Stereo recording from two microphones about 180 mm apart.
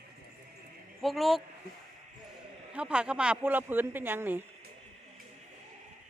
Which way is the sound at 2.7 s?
5° right (ahead or behind).